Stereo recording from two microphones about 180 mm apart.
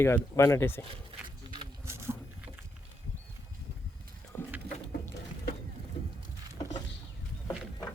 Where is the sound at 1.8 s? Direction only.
15° right (ahead or behind).